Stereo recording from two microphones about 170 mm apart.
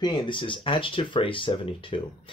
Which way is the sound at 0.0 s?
30° left (ahead or behind).